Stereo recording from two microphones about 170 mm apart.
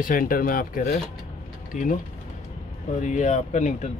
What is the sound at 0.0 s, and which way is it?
Speech, 55° left (ahead or behind).